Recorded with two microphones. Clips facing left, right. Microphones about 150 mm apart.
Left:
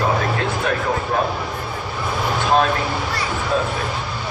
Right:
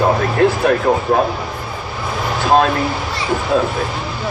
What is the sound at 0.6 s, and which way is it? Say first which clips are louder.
Speech: right 7 dB; 50° right (ahead or behind).